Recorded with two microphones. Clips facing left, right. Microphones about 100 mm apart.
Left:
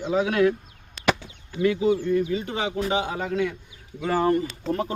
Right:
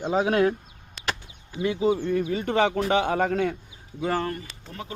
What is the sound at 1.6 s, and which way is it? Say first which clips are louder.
Speech: left 2 dB; 30° right (ahead or behind).